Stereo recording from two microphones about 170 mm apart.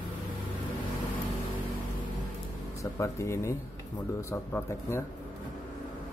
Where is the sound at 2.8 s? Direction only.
15° left (ahead or behind).